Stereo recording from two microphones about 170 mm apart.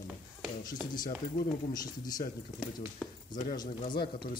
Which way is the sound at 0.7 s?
25° left (ahead or behind).